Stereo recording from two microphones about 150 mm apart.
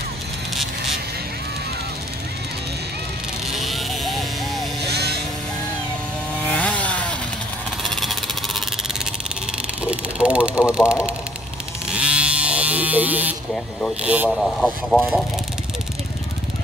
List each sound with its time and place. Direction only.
3.5 s vehicle: centre (ahead or behind)
4.8 s vehicle: 90° right
6.5 s chainsaw: 10° left (ahead or behind)
7.9 s vehicle: centre (ahead or behind)
9.8 s vehicle: 10° right (ahead or behind)
10.7 s speech: 5° right (ahead or behind)
11.9 s electric shaver: 10° right (ahead or behind)
14.0 s speech: 10° right (ahead or behind)
14.3 s speech: 5° left (ahead or behind)